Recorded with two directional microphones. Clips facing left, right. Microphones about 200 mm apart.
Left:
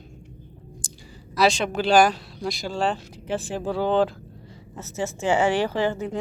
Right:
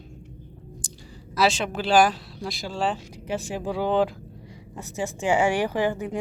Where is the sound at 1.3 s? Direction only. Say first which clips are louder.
Left 2 dB; 5° right (ahead or behind).